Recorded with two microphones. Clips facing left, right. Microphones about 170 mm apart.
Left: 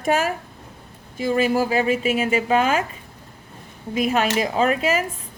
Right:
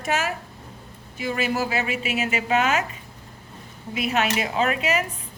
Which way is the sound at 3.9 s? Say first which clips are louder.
Left 4 dB; 35° left (ahead or behind).